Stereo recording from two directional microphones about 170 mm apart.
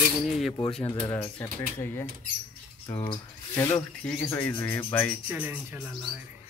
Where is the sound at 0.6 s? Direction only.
35° left (ahead or behind).